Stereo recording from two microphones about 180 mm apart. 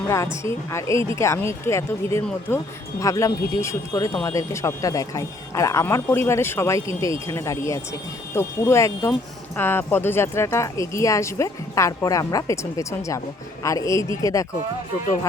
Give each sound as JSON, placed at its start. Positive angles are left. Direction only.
{"t": 0.4, "sound": "speech", "side_deg": 15}